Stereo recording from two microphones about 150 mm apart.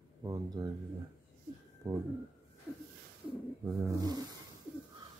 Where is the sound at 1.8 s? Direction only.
20° right (ahead or behind).